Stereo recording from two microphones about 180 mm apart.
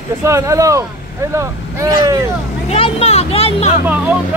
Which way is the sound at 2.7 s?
35° left (ahead or behind).